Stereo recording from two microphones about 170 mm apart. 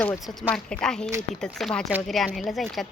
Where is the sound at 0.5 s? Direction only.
5° left (ahead or behind).